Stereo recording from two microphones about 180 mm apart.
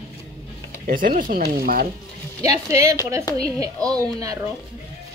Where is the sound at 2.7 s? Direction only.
15° right (ahead or behind).